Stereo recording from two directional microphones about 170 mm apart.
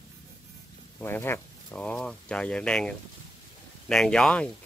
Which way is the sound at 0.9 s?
15° left (ahead or behind).